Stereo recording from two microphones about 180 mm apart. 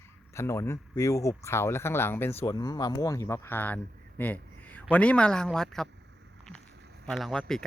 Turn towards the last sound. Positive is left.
turn(degrees=5)  # may be behind; listen again after turning